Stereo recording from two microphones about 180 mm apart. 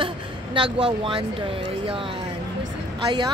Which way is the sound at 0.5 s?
25° right (ahead or behind).